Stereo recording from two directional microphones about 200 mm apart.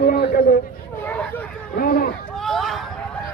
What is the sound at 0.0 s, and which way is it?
Chatter, 45° left (ahead or behind).